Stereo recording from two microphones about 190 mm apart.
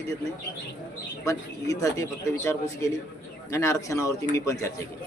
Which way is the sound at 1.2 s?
15° left (ahead or behind).